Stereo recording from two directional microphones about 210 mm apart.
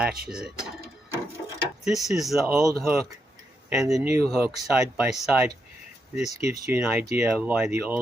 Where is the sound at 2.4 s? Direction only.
10° right (ahead or behind).